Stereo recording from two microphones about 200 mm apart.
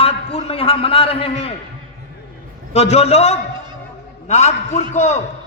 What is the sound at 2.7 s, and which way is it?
A man's voice, 30° left (ahead or behind).